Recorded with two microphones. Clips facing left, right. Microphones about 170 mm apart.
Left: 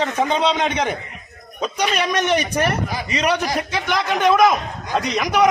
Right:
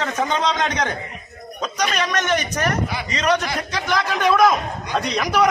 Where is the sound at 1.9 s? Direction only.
10° left (ahead or behind).